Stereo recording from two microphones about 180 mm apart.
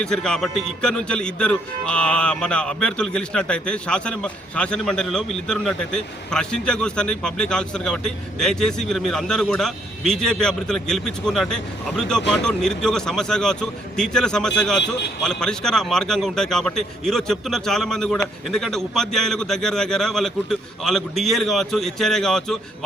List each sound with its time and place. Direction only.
0.0 s a man's voice: 5° left (ahead or behind)
14.8 s speech: 70° left (ahead or behind)
15.2 s a man's voice: 5° left (ahead or behind)